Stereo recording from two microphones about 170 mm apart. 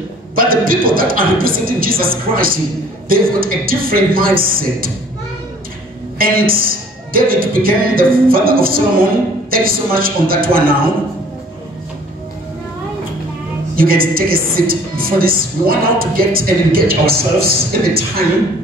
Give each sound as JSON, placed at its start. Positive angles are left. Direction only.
{"t": 0.4, "sound": "speech", "side_deg": -55}
{"t": 6.1, "sound": "speech", "side_deg": -60}
{"t": 13.7, "sound": "speech", "side_deg": -60}